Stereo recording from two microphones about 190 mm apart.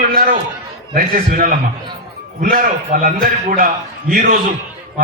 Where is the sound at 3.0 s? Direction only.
45° right (ahead or behind).